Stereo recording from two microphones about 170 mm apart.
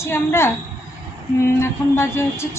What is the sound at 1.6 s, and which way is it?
Speech, 15° left (ahead or behind).